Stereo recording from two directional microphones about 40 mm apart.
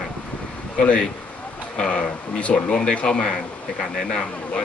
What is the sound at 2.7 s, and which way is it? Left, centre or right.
Speech, centre.